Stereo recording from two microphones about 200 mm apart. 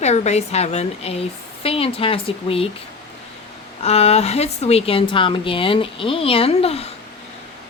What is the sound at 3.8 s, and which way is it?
Speech, 30° left (ahead or behind).